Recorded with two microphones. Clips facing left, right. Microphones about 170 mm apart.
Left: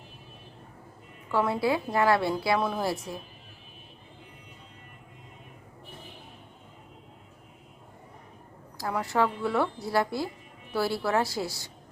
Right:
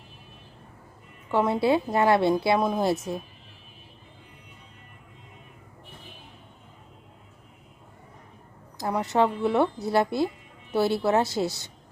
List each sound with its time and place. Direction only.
1.3 s a woman's voice: 20° right (ahead or behind)
8.8 s a woman's voice: 20° right (ahead or behind)